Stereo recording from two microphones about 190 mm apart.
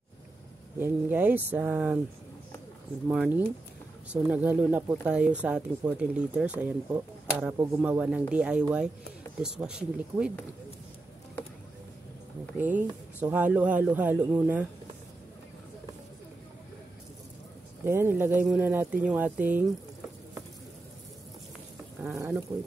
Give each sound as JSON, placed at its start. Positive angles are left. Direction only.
{"t": 0.7, "sound": "speech", "side_deg": -10}
{"t": 3.1, "sound": "speech", "side_deg": -5}
{"t": 12.5, "sound": "speech", "side_deg": -10}
{"t": 17.8, "sound": "speech", "side_deg": -10}
{"t": 22.0, "sound": "speech", "side_deg": -15}